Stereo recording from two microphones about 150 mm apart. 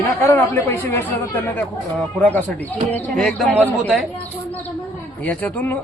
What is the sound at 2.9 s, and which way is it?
Speech, centre (ahead or behind).